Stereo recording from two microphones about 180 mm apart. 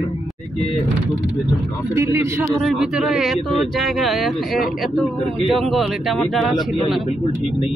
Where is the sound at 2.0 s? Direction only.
15° right (ahead or behind).